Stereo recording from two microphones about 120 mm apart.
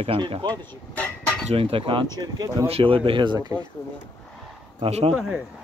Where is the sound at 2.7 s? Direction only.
50° right (ahead or behind).